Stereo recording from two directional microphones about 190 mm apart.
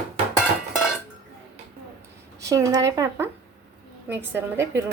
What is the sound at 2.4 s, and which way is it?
Speech, 15° right (ahead or behind).